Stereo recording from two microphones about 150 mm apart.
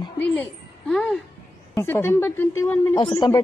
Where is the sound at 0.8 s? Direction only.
5° left (ahead or behind).